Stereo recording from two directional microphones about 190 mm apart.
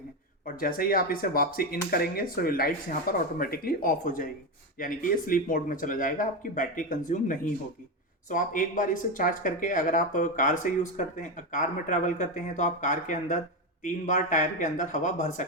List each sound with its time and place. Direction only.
0.4 s a man's voice: 50° left (ahead or behind)